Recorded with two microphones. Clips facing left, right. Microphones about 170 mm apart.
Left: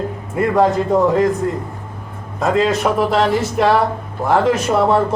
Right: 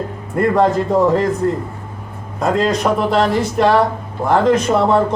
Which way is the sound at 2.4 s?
Centre (ahead or behind).